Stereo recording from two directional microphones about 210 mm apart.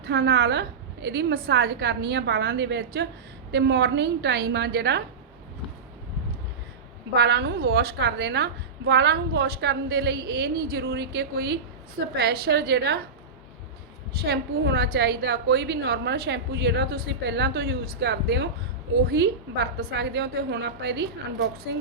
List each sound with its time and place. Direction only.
0.0 s a woman's voice: 50° right (ahead or behind)
7.1 s a woman's voice: 50° right (ahead or behind)
14.3 s a woman's voice: 50° right (ahead or behind)